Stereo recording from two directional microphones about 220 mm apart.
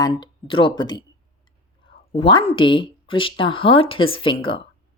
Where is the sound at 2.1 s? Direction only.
25° left (ahead or behind).